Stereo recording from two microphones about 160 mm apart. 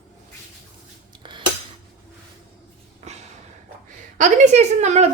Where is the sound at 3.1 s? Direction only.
45° right (ahead or behind).